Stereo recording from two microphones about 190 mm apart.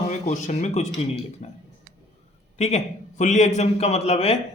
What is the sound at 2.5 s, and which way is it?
A man's voice, 35° left (ahead or behind).